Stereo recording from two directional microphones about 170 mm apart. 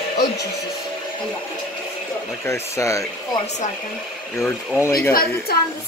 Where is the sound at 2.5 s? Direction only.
15° left (ahead or behind).